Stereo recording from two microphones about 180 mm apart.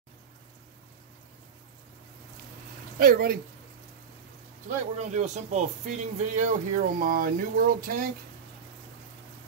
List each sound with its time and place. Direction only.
3.0 s speech: 55° right (ahead or behind)
4.9 s speech: 40° right (ahead or behind)